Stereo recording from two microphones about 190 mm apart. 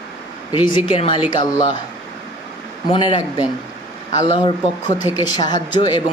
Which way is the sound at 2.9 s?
25° left (ahead or behind).